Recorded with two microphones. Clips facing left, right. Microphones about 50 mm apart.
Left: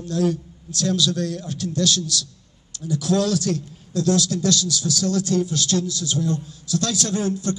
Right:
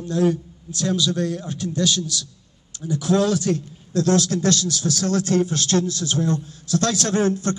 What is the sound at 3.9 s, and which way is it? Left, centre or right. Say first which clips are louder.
A man's voice: right 2 dB; right.